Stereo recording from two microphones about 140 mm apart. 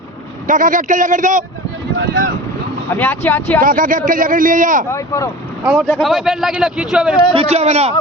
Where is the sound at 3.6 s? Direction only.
75° right (ahead or behind).